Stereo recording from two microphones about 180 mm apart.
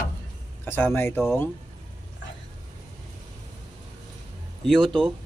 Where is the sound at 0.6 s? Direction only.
10° left (ahead or behind).